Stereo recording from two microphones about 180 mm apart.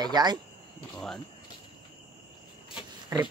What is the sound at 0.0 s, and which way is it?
Speech, 20° right (ahead or behind).